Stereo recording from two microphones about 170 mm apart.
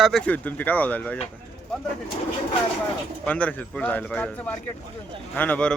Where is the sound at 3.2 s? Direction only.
10° left (ahead or behind).